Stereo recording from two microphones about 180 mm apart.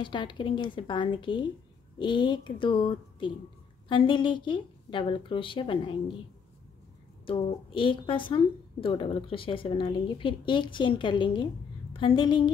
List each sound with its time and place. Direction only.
0.0 s a woman's voice: 25° left (ahead or behind)
7.2 s a woman's voice: 30° left (ahead or behind)